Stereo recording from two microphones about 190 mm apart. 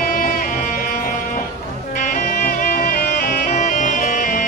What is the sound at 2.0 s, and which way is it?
Music, 45° left (ahead or behind).